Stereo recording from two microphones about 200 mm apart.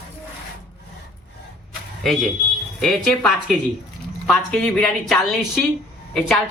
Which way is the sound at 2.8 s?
Centre (ahead or behind).